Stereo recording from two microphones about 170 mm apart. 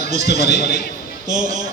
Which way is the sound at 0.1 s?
45° right (ahead or behind).